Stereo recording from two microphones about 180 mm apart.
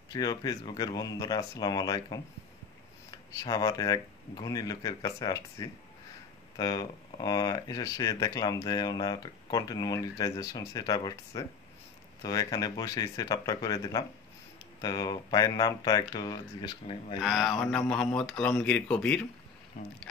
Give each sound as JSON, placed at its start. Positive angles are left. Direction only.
{"t": 0.1, "sound": "speech", "side_deg": 20}
{"t": 17.2, "sound": "speech", "side_deg": 0}
{"t": 19.7, "sound": "speech", "side_deg": 50}